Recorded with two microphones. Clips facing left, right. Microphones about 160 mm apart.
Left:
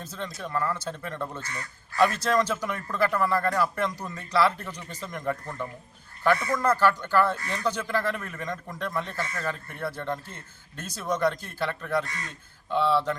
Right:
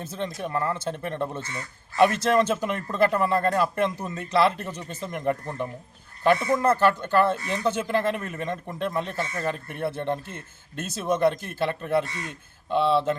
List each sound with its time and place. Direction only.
0.0 s a man's voice: 25° right (ahead or behind)